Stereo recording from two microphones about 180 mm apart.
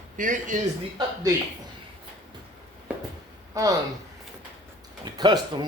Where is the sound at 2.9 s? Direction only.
5° right (ahead or behind).